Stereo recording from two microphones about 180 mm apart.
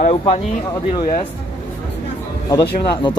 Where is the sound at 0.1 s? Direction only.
35° left (ahead or behind).